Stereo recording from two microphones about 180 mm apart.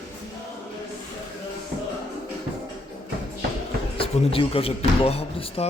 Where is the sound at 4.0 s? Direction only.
30° left (ahead or behind).